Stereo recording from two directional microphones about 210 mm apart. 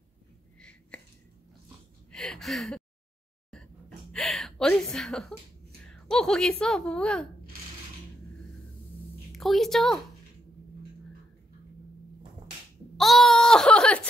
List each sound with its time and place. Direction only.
0.6 s a sound: 5° left (ahead or behind)
2.1 s gasp: centre (ahead or behind)
4.1 s a woman's voice: 5° left (ahead or behind)
9.3 s a woman's voice: centre (ahead or behind)
12.9 s speech: centre (ahead or behind)